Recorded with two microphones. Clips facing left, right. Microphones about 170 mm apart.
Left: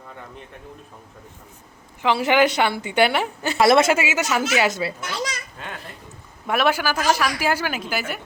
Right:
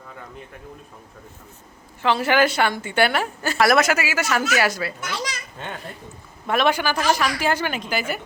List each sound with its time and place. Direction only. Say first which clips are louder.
2.0 s a woman's voice: left 1 dB; 15° left (ahead or behind)
6.5 s a woman's voice: even; 5° left (ahead or behind)